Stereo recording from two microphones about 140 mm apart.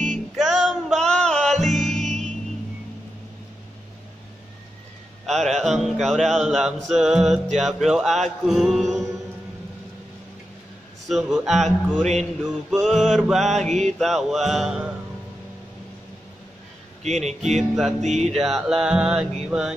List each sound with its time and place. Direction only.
0.1 s music: centre (ahead or behind)
5.2 s speech: 5° left (ahead or behind)
6.9 s music: centre (ahead or behind)
11.1 s music: centre (ahead or behind)
17.0 s speech: 55° right (ahead or behind)
17.6 s music: centre (ahead or behind)
18.0 s speech: 55° right (ahead or behind)
18.3 s music: centre (ahead or behind)